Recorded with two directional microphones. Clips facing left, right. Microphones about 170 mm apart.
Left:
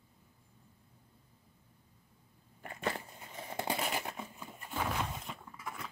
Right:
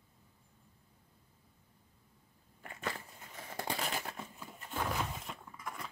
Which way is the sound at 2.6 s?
35° left (ahead or behind).